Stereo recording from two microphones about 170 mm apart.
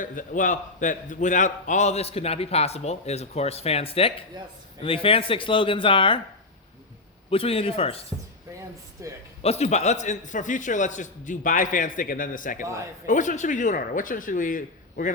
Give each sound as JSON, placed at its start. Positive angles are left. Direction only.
{"t": 0.0, "sound": "a man's voice", "side_deg": 50}
{"t": 7.3, "sound": "a man's voice", "side_deg": 35}
{"t": 9.0, "sound": "a man's voice", "side_deg": -20}
{"t": 9.4, "sound": "a man's voice", "side_deg": 40}